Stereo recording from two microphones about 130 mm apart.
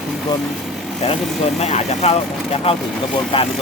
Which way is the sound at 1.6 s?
55° left (ahead or behind).